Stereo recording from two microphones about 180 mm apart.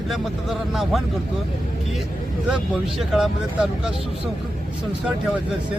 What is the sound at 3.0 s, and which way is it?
Speech, centre (ahead or behind).